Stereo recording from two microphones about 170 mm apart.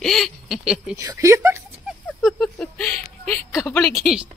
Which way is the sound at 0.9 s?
15° right (ahead or behind).